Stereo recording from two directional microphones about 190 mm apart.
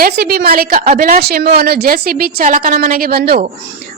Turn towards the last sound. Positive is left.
turn(degrees=-50)  # may be behind; listen again after turning